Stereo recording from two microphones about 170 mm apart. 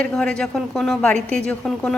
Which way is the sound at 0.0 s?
5° left (ahead or behind).